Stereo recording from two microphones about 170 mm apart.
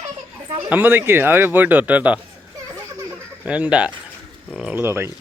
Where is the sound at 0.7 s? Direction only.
10° right (ahead or behind).